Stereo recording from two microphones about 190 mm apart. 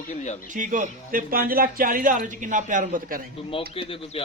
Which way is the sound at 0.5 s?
40° right (ahead or behind).